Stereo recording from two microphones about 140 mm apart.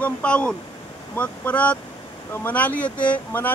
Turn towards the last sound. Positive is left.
turn(degrees=10)  # may be behind; listen again after turning